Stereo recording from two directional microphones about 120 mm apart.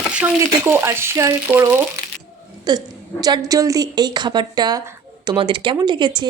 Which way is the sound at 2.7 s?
35° right (ahead or behind).